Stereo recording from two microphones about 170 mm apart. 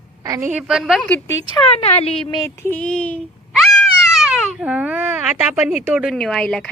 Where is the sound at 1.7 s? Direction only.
35° left (ahead or behind).